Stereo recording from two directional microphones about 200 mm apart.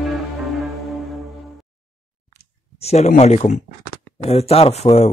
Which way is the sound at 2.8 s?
30° left (ahead or behind).